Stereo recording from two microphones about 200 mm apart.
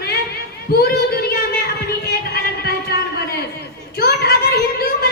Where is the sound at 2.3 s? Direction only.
50° left (ahead or behind).